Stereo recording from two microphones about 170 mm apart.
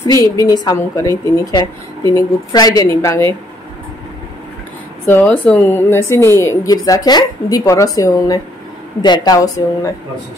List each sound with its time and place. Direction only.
0.0 s a woman's voice: 20° left (ahead or behind)
5.0 s a woman's voice: 10° left (ahead or behind)